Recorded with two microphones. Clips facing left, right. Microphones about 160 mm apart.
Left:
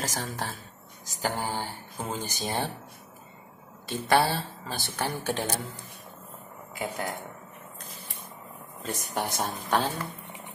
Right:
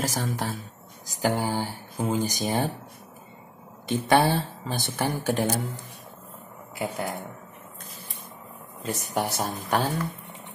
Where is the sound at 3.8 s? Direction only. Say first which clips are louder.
Right 3 dB; 20° right (ahead or behind).